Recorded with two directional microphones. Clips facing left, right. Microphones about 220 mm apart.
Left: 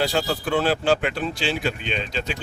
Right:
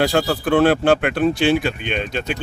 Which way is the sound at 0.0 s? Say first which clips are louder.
Right 5 dB; 55° right (ahead or behind).